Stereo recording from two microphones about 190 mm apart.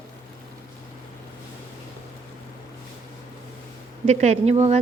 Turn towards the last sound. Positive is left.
turn(degrees=-35)  # may be behind; listen again after turning